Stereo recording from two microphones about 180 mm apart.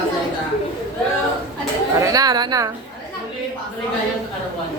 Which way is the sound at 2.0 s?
20° right (ahead or behind).